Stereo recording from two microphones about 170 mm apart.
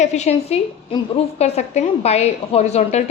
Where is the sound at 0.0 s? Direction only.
40° left (ahead or behind).